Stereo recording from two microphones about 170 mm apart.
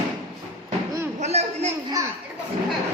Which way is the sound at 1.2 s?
40° right (ahead or behind).